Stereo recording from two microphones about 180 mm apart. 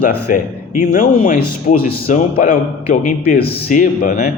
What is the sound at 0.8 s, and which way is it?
A man's voice, 50° left (ahead or behind).